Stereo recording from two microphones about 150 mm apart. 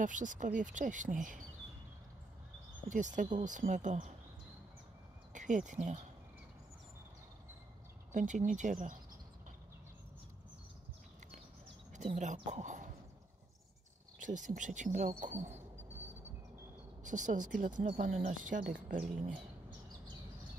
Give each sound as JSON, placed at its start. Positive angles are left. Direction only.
{"t": 0.0, "sound": "speech", "side_deg": -60}
{"t": 2.9, "sound": "speech", "side_deg": -55}
{"t": 5.3, "sound": "speech", "side_deg": -55}
{"t": 8.1, "sound": "speech", "side_deg": -55}
{"t": 12.1, "sound": "speech", "side_deg": -50}
{"t": 14.2, "sound": "speech", "side_deg": -60}
{"t": 17.0, "sound": "speech", "side_deg": -55}
{"t": 18.9, "sound": "speech", "side_deg": -65}